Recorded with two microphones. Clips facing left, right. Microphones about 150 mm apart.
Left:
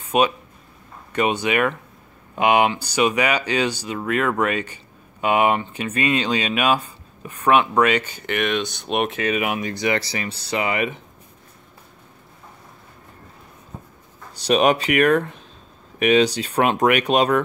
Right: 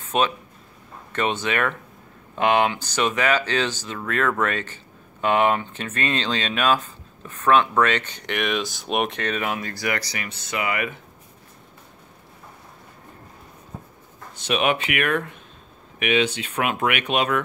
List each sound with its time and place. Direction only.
0.0 s a sound: 10° left (ahead or behind)
1.1 s speech: 10° left (ahead or behind)
14.3 s speech: 35° left (ahead or behind)